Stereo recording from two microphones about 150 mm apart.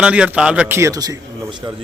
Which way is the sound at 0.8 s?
20° right (ahead or behind).